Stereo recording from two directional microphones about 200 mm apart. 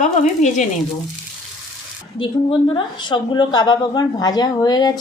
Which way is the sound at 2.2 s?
25° left (ahead or behind).